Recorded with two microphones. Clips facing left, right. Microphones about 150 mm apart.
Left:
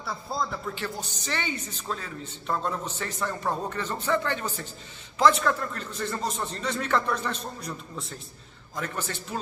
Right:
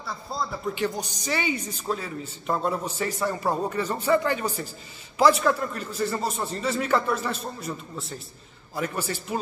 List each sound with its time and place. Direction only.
0.0 s a man's voice: centre (ahead or behind)
0.7 s speech: 15° right (ahead or behind)